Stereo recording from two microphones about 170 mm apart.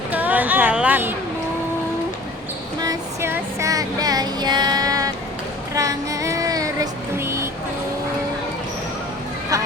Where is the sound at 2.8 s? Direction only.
20° right (ahead or behind).